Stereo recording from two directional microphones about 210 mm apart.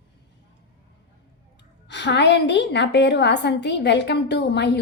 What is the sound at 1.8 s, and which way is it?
A woman's voice, 55° left (ahead or behind).